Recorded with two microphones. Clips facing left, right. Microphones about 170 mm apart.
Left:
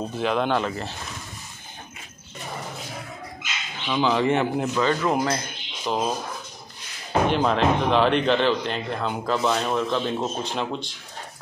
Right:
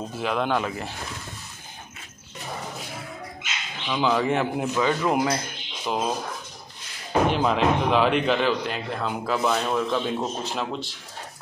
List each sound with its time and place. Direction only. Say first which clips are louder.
0.2 s speech: left 2 dB; centre (ahead or behind)
3.8 s speech: left 1 dB; centre (ahead or behind)